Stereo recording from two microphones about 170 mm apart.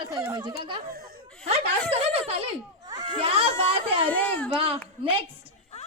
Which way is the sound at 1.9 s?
35° right (ahead or behind).